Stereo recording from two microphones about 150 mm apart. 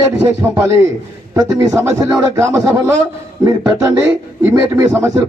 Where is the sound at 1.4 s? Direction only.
20° right (ahead or behind).